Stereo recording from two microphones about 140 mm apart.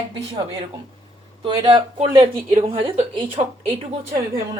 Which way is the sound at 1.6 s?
40° right (ahead or behind).